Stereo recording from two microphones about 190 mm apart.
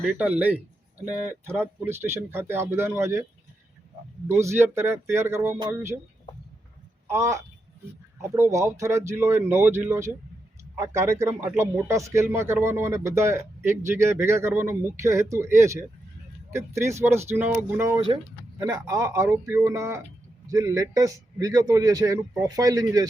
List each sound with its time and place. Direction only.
0.0 s speech: 5° right (ahead or behind)
4.3 s speech: 15° right (ahead or behind)
7.1 s speech: 15° right (ahead or behind)